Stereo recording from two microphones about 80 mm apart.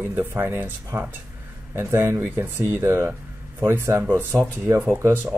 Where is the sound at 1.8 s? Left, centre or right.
Right.